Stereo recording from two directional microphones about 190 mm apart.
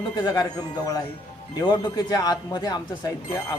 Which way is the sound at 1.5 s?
20° left (ahead or behind).